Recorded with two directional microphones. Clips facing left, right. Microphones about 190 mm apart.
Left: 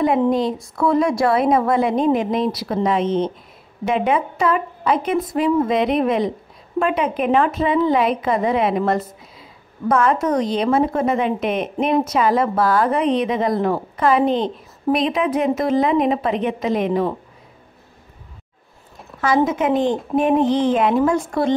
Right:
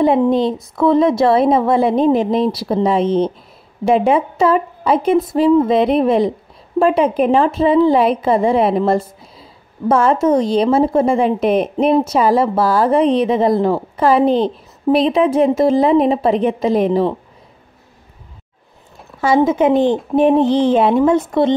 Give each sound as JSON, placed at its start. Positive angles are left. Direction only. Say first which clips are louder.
{"t": 0.0, "sound": "a woman's voice", "louder": "right 4 dB", "side_deg": -25}
{"t": 19.2, "sound": "a woman's voice", "louder": "right 5 dB", "side_deg": -25}
{"t": 19.7, "sound": "a woman's voice", "louder": "right 4 dB", "side_deg": 0}
{"t": 20.2, "sound": "a woman's voice", "louder": "right 4 dB", "side_deg": -30}
{"t": 21.3, "sound": "a woman's voice", "louder": "right 5 dB", "side_deg": 0}